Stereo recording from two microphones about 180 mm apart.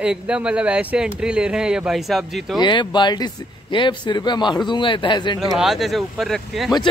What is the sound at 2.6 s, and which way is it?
Speech, 25° left (ahead or behind).